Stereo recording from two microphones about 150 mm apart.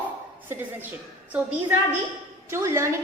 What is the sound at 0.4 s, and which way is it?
Speech, 15° right (ahead or behind).